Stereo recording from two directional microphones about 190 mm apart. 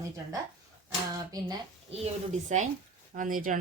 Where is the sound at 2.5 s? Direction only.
40° right (ahead or behind).